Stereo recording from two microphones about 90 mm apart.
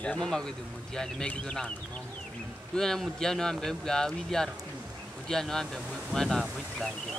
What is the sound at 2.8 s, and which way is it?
Speech, 5° left (ahead or behind).